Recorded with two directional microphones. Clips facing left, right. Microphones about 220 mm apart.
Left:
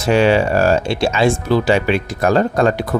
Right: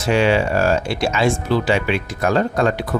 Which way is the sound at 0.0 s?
40° left (ahead or behind).